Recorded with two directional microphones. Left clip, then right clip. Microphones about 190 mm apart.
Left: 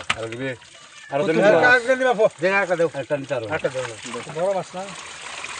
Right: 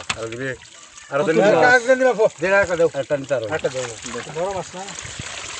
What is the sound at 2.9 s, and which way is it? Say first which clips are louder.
Speech: right 3 dB; centre (ahead or behind).